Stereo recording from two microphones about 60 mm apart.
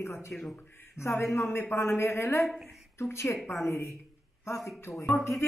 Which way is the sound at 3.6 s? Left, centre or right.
Left.